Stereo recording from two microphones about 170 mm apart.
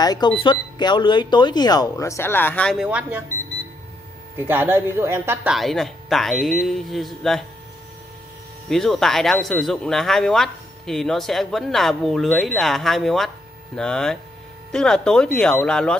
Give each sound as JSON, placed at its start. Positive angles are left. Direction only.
{"t": 0.0, "sound": "speech", "side_deg": 25}
{"t": 2.8, "sound": "speech", "side_deg": -10}
{"t": 4.4, "sound": "speech", "side_deg": -15}
{"t": 8.6, "sound": "speech", "side_deg": 0}